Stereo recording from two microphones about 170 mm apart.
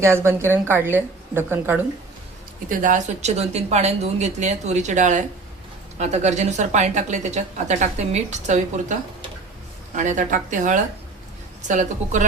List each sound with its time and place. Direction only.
0.0 s a woman's voice: 15° right (ahead or behind)
2.6 s a woman's voice: 50° right (ahead or behind)